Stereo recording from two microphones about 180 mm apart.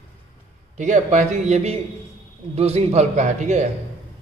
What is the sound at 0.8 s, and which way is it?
A man's voice, 40° right (ahead or behind).